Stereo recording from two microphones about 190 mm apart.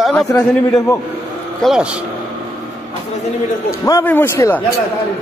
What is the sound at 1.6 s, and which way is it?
Speech, centre (ahead or behind).